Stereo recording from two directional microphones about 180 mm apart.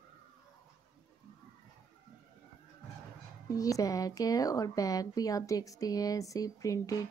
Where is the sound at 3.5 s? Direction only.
20° left (ahead or behind).